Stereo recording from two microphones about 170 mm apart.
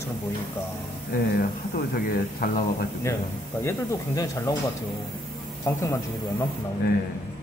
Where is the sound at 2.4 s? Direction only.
60° left (ahead or behind).